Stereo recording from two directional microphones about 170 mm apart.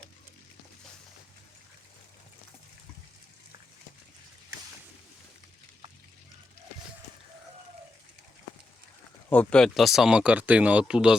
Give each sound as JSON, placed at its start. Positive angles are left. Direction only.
{"t": 9.3, "sound": "speech", "side_deg": 5}